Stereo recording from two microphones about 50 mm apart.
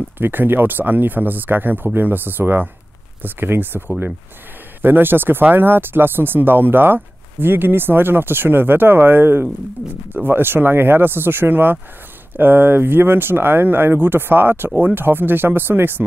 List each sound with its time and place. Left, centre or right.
0.2 s speech: right